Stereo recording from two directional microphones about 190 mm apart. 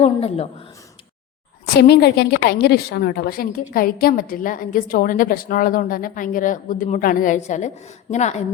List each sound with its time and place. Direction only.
0.0 s a woman's voice: 30° left (ahead or behind)
1.6 s a woman's voice: 55° left (ahead or behind); by 8.4 s 35° left (ahead or behind)